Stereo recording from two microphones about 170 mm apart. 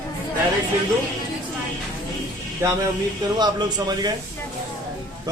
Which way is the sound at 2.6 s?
15° right (ahead or behind).